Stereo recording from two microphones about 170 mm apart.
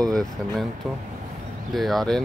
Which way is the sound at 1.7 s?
Centre (ahead or behind).